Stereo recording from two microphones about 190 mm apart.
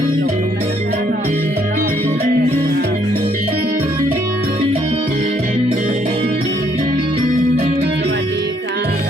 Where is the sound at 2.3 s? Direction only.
55° right (ahead or behind).